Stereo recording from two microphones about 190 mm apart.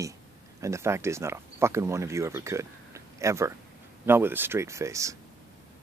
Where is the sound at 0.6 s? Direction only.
15° right (ahead or behind).